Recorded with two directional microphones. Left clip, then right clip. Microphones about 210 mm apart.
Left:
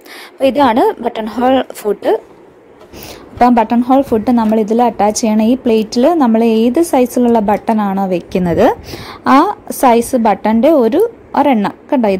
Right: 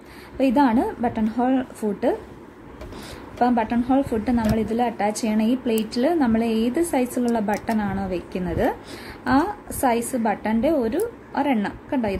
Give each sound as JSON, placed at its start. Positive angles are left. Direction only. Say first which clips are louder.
{"t": 0.4, "sound": "a woman's voice", "louder": "left 9 dB", "side_deg": 45}
{"t": 3.3, "sound": "a woman's voice", "louder": "left 11 dB", "side_deg": 35}